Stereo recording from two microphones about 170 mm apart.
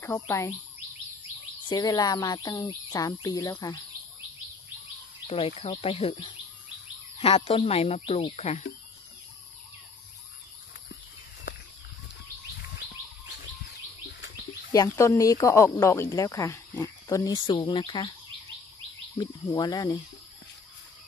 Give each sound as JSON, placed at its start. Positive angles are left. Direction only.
{"t": 0.0, "sound": "speech", "side_deg": 15}
{"t": 1.7, "sound": "speech", "side_deg": 25}
{"t": 5.2, "sound": "speech", "side_deg": 40}
{"t": 7.3, "sound": "speech", "side_deg": 30}
{"t": 14.7, "sound": "speech", "side_deg": 20}
{"t": 19.1, "sound": "speech", "side_deg": 25}